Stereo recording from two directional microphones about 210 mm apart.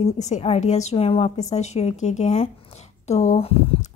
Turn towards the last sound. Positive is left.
turn(degrees=25)  # may be behind; listen again after turning